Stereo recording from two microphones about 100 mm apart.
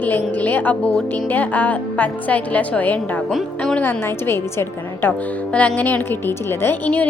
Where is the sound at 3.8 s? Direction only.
25° left (ahead or behind).